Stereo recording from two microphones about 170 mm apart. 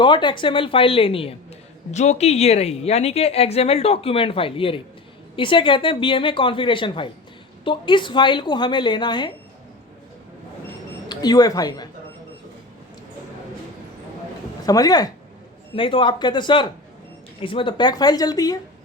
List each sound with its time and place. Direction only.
0.0 s a woman's voice: 25° left (ahead or behind)
11.1 s a woman's voice: 25° left (ahead or behind)
14.7 s a woman's voice: 20° left (ahead or behind)